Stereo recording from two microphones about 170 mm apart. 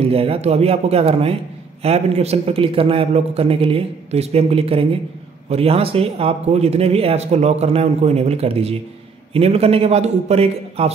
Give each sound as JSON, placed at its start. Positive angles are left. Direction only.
{"t": 0.0, "sound": "speech", "side_deg": -35}